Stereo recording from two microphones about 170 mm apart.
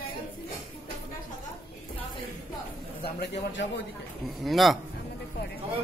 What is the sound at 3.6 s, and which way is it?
Speech, 90° left.